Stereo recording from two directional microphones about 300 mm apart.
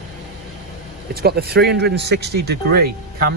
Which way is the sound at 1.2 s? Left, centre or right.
Right.